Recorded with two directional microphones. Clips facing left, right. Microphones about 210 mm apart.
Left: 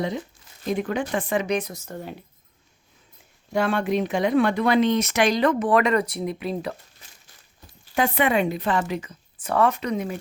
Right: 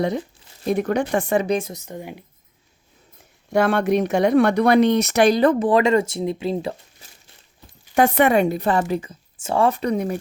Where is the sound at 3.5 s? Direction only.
50° right (ahead or behind).